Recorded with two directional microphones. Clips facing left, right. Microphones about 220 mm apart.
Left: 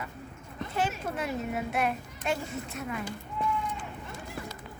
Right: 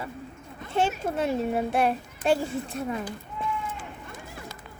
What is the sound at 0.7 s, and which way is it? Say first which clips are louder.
A child's voice: right 6 dB; 25° right (ahead or behind).